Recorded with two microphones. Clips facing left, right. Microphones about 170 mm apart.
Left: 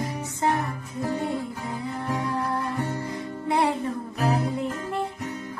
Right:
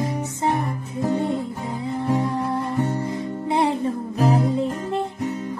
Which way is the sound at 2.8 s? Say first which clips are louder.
Right 6 dB; 20° right (ahead or behind).